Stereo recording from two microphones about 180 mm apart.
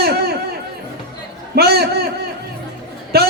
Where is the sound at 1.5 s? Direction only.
60° right (ahead or behind).